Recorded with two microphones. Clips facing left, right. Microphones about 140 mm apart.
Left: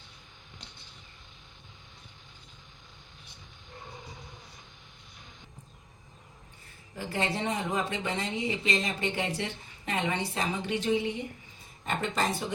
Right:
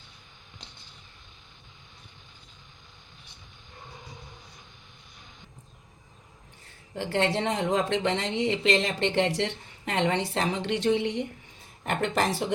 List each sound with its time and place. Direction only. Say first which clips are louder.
6.9 s a woman's voice: right 5 dB; 70° right (ahead or behind)